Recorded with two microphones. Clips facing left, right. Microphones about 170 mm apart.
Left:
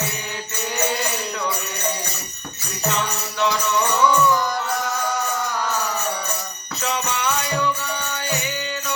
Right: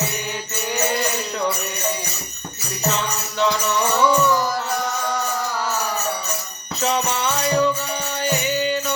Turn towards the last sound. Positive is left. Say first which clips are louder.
# right 4 dB
turn(degrees=-35)  # may be behind; listen again after turning